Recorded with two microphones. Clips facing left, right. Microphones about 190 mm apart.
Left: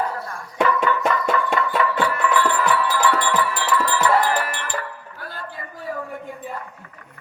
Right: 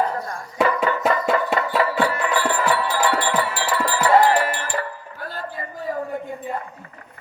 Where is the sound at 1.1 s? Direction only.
40° right (ahead or behind).